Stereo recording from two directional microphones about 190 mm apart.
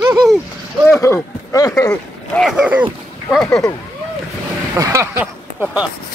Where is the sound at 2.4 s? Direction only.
5° right (ahead or behind).